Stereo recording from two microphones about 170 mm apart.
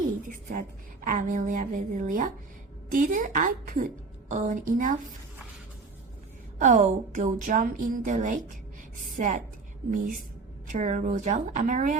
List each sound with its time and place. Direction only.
0.2 s a woman's voice: 50° right (ahead or behind)
6.6 s a woman's voice: 45° right (ahead or behind)